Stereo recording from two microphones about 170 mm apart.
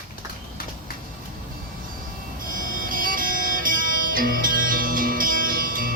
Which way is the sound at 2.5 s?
55° right (ahead or behind).